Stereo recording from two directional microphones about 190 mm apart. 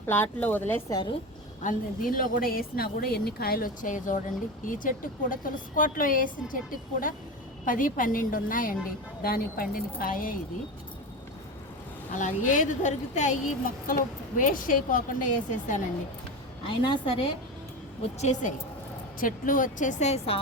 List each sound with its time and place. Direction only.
0.0 s speech: 10° left (ahead or behind)
1.6 s a woman's voice: 45° left (ahead or behind)
12.1 s a woman's voice: 40° left (ahead or behind)
16.6 s a woman's voice: 25° left (ahead or behind)
18.2 s speech: 35° left (ahead or behind)